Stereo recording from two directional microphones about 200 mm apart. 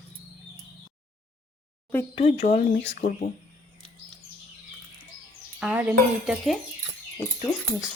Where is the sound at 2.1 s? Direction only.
35° left (ahead or behind).